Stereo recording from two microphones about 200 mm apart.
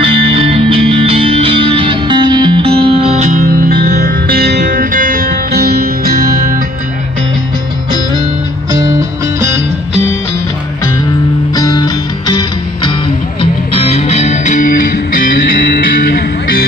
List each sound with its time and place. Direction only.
0.0 s music: 25° right (ahead or behind); by 6.6 s 45° right (ahead or behind)
11.5 s music: 20° left (ahead or behind); by 16.6 s 50° left (ahead or behind)